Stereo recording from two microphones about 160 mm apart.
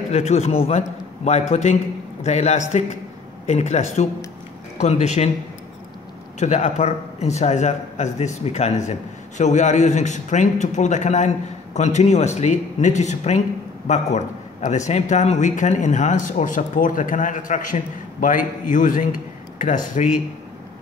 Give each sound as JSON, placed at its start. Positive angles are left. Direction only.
{"t": 0.1, "sound": "a man's voice", "side_deg": 40}
{"t": 6.4, "sound": "a man's voice", "side_deg": 45}